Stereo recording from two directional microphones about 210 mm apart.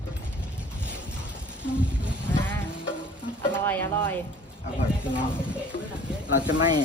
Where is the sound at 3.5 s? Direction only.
10° left (ahead or behind).